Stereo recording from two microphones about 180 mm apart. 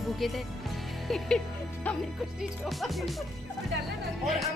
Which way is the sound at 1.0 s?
Centre (ahead or behind).